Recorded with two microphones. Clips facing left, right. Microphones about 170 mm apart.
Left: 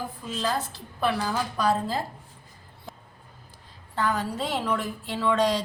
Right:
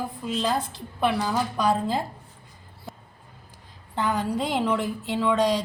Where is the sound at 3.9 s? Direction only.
20° right (ahead or behind).